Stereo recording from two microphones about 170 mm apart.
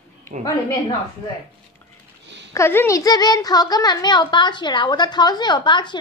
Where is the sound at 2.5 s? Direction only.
15° left (ahead or behind).